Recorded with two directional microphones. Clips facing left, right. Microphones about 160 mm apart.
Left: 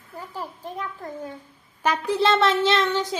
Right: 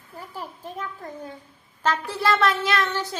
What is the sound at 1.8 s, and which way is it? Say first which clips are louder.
A woman's voice: left 3 dB; 15° left (ahead or behind).